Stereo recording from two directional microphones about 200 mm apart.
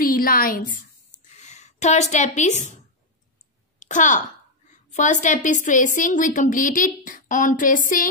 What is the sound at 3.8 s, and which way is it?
A child's voice, 40° left (ahead or behind).